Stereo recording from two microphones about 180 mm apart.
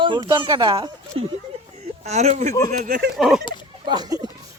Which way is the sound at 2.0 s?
40° right (ahead or behind).